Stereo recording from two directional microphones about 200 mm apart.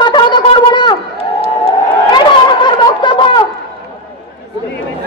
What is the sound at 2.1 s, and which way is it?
Snicker, 25° left (ahead or behind).